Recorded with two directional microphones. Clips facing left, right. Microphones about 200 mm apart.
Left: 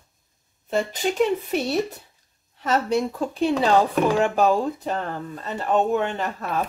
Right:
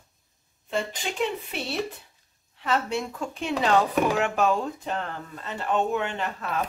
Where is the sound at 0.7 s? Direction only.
40° left (ahead or behind).